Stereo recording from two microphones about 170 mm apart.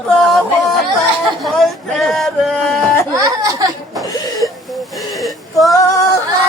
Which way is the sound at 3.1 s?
20° right (ahead or behind).